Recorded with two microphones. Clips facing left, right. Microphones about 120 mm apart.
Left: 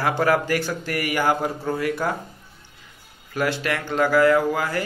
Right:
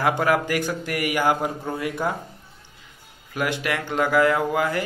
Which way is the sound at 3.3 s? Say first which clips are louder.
Left 1 dB; 15° right (ahead or behind).